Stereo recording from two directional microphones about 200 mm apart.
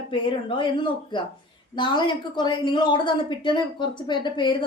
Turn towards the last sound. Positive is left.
turn(degrees=25)  # may be behind; listen again after turning